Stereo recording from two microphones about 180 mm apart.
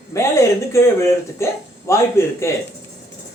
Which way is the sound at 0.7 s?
15° left (ahead or behind).